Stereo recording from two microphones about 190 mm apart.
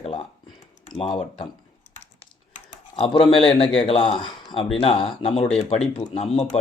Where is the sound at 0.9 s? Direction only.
25° left (ahead or behind).